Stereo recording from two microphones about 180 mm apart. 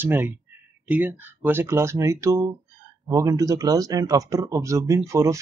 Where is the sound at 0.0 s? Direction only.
10° right (ahead or behind).